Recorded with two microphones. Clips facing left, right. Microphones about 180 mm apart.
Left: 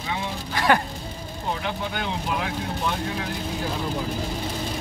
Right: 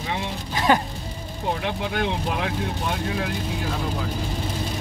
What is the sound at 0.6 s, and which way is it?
Music, 15° right (ahead or behind).